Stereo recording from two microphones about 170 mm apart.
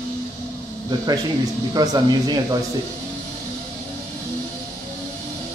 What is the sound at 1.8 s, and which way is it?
Speech, 25° right (ahead or behind).